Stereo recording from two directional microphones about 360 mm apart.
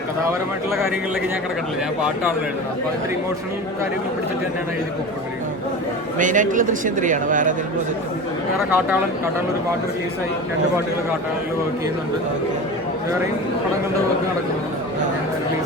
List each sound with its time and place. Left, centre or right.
6.1 s speech: right
8.5 s speech: centre